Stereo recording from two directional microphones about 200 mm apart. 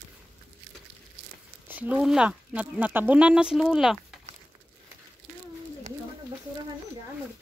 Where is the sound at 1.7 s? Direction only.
5° right (ahead or behind).